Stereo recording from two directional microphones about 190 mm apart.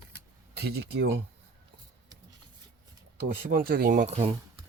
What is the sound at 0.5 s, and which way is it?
Speech, 60° right (ahead or behind).